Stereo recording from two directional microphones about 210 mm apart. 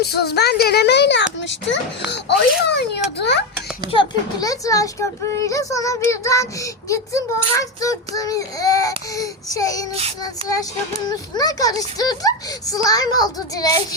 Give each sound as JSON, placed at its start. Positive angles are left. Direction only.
{"t": 0.0, "sound": "speech", "side_deg": 50}
{"t": 3.9, "sound": "speech", "side_deg": 15}